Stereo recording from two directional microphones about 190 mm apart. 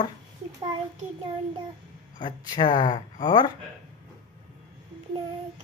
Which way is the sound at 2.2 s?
25° left (ahead or behind).